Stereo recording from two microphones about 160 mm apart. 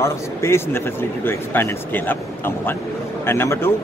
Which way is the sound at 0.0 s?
15° left (ahead or behind).